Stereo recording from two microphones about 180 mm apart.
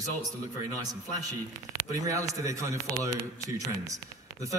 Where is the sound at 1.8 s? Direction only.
20° right (ahead or behind).